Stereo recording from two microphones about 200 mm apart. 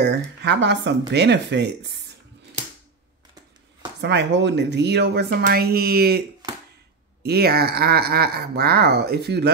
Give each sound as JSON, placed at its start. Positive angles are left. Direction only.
{"t": 0.0, "sound": "speech", "side_deg": -60}
{"t": 4.0, "sound": "speech", "side_deg": -60}
{"t": 7.2, "sound": "speech", "side_deg": -50}